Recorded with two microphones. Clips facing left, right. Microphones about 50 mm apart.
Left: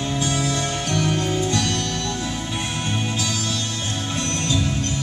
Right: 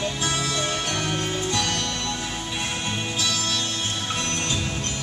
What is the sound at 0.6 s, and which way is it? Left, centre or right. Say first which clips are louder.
Music: left 3 dB; right.